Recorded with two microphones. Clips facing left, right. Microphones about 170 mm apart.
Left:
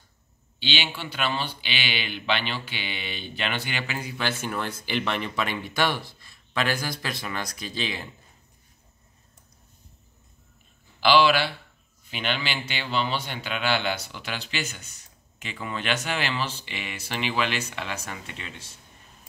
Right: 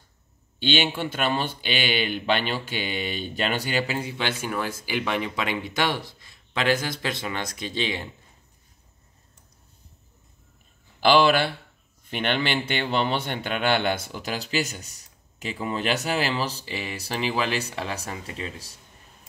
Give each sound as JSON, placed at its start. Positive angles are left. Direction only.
{"t": 0.6, "sound": "speech", "side_deg": -50}
{"t": 4.2, "sound": "speech", "side_deg": -15}
{"t": 11.0, "sound": "speech", "side_deg": -50}